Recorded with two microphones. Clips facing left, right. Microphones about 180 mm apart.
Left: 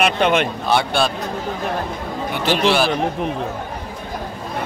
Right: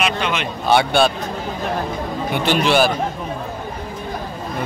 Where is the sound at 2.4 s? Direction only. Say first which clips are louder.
Right 1 dB; centre (ahead or behind).